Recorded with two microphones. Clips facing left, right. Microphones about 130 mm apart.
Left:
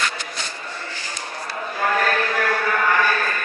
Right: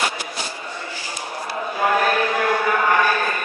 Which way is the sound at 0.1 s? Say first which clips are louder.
Right 2 dB; 10° right (ahead or behind).